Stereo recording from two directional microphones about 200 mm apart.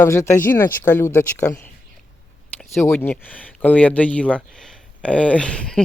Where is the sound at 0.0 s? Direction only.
15° left (ahead or behind).